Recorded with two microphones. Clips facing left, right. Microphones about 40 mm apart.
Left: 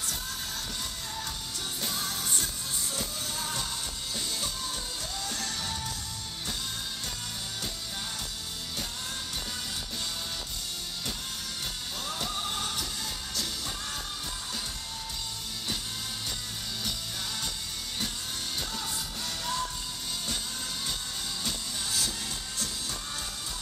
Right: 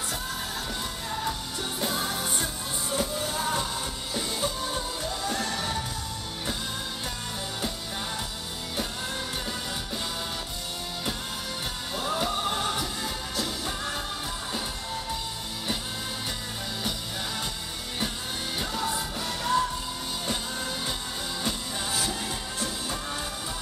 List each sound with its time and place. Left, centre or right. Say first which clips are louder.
1.8 s music: right 6 dB; right
12.0 s music: right 7 dB; right
18.6 s music: right 6 dB; right
21.5 s music: right 5 dB; right